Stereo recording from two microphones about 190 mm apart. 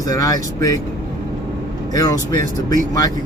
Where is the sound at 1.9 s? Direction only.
20° left (ahead or behind).